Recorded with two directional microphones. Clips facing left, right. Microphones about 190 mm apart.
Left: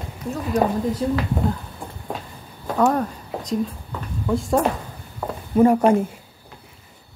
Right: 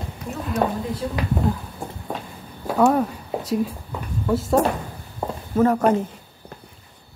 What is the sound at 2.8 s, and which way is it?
Speech, 5° right (ahead or behind).